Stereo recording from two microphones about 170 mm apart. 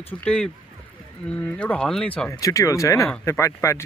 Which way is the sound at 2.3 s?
20° left (ahead or behind).